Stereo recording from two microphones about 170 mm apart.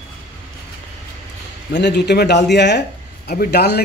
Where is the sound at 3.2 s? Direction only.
70° left (ahead or behind).